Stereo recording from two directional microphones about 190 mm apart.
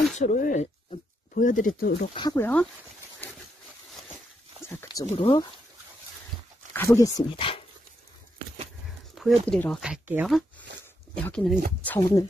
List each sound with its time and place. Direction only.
0.2 s speech: 45° left (ahead or behind)
2.1 s speech: 15° left (ahead or behind)
5.0 s speech: 30° left (ahead or behind)
6.7 s speech: 15° left (ahead or behind)
9.2 s a sound: centre (ahead or behind)
9.5 s speech: 5° left (ahead or behind)
11.1 s speech: 5° left (ahead or behind)